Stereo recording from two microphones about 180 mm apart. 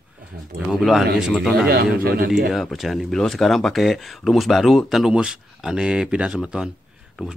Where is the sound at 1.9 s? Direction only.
55° right (ahead or behind).